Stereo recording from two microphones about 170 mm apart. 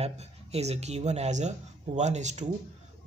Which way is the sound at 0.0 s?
40° right (ahead or behind).